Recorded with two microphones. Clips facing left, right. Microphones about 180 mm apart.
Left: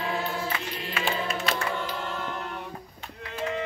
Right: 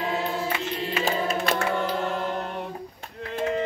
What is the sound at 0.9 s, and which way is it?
Music, 35° right (ahead or behind).